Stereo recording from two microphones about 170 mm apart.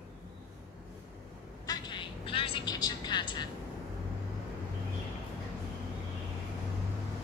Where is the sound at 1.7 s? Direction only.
25° left (ahead or behind).